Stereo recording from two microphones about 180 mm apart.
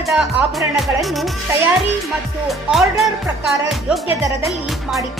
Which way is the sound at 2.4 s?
Centre (ahead or behind).